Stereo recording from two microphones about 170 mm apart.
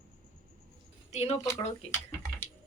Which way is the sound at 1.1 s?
40° left (ahead or behind).